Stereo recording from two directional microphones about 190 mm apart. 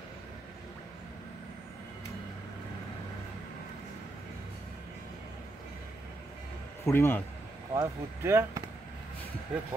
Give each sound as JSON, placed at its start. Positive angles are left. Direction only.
{"t": 6.8, "sound": "a man's voice", "side_deg": 15}
{"t": 7.7, "sound": "speech", "side_deg": -15}
{"t": 9.5, "sound": "speech", "side_deg": -5}